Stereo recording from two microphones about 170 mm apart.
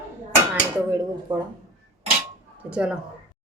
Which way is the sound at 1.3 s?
30° right (ahead or behind).